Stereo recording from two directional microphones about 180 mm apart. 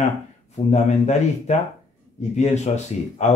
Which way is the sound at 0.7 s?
40° left (ahead or behind).